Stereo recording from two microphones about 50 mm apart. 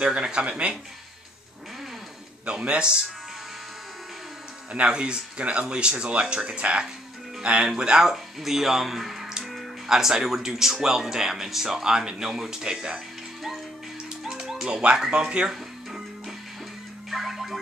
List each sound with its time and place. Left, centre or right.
0.0 s speech: centre
2.4 s speech: right
4.7 s speech: right
14.3 s music: centre
14.7 s speech: right
17.1 s music: centre